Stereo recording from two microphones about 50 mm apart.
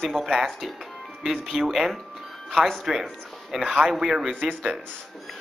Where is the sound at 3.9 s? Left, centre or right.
Centre.